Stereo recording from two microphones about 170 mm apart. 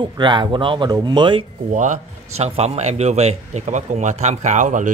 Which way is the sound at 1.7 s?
45° right (ahead or behind).